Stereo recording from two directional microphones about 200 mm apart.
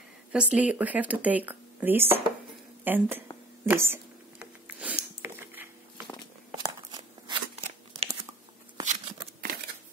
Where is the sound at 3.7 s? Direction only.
10° right (ahead or behind).